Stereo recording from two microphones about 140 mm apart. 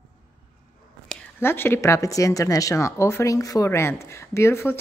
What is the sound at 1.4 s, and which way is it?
Speech, 15° left (ahead or behind).